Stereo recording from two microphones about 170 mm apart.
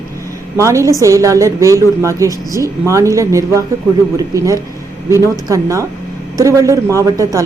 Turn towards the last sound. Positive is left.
turn(degrees=-20)  # may be behind; listen again after turning